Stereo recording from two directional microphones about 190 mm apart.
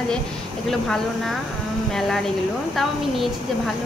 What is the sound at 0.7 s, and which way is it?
A woman's voice, centre (ahead or behind).